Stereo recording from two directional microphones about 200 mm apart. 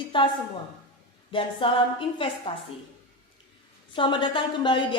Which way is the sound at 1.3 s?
25° left (ahead or behind).